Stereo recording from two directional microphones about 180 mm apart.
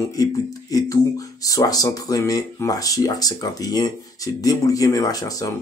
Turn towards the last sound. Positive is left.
turn(degrees=20)  # may be behind; listen again after turning